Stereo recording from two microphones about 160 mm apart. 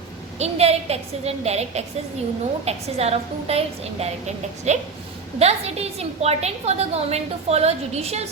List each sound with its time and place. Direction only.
0.3 s a woman's voice: 40° right (ahead or behind)